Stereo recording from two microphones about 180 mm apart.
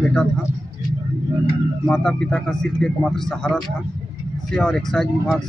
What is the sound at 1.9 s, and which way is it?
A man's voice, 5° left (ahead or behind).